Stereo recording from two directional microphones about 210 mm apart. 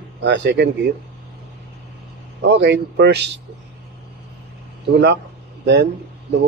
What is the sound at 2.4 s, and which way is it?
Speech, 55° right (ahead or behind).